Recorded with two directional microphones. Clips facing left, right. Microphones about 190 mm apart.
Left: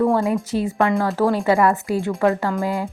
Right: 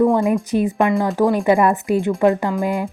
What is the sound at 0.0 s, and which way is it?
A woman's voice, 15° right (ahead or behind).